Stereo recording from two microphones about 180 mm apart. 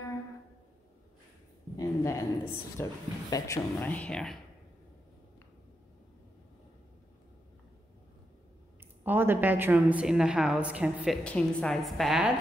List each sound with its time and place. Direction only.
1.8 s a sound: 20° left (ahead or behind)
2.8 s speech: 20° left (ahead or behind); by 4.4 s 5° left (ahead or behind)
9.0 s a woman's voice: 10° right (ahead or behind)
11.2 s a woman's voice: 5° left (ahead or behind)